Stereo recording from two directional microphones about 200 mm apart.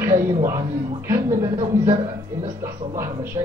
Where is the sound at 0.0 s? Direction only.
15° right (ahead or behind).